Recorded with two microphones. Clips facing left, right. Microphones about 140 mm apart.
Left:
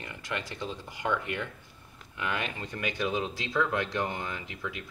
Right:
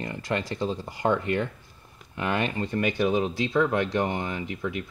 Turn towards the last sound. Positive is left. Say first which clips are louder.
# right 6 dB
turn(degrees=-25)  # may be behind; listen again after turning